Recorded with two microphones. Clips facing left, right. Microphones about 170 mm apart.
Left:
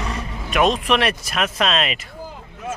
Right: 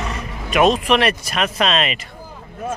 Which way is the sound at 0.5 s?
Centre (ahead or behind).